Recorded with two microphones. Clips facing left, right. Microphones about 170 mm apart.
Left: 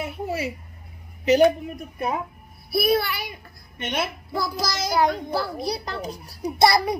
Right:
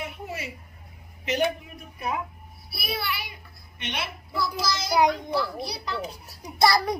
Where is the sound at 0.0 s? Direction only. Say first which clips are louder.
Left 7 dB; 40° left (ahead or behind).